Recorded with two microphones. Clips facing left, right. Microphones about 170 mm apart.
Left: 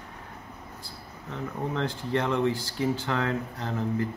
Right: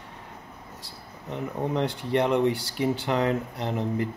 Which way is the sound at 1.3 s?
20° right (ahead or behind).